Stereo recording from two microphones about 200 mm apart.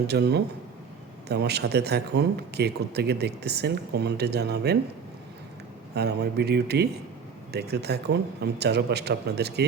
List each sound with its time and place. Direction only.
0.1 s speech: 55° right (ahead or behind)
5.9 s speech: 55° right (ahead or behind)